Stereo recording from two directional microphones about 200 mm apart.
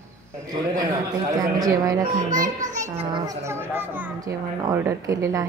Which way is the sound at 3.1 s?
15° right (ahead or behind).